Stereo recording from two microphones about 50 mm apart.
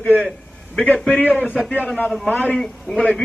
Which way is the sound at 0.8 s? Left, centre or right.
Left.